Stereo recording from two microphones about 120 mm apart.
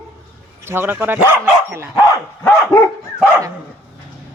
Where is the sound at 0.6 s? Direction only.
20° right (ahead or behind).